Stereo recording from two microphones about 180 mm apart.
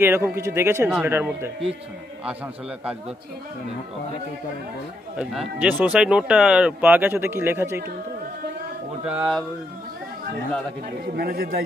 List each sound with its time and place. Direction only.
0.0 s speech: 10° right (ahead or behind)
5.1 s speech: 5° right (ahead or behind)
9.0 s speech: 5° right (ahead or behind)
11.1 s a man's voice: 60° right (ahead or behind)